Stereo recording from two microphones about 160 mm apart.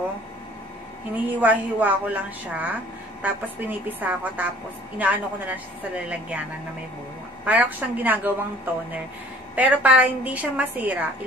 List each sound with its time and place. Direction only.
1.1 s a woman's voice: 10° right (ahead or behind)
7.4 s a woman's voice: 10° right (ahead or behind)
9.6 s a woman's voice: 10° right (ahead or behind)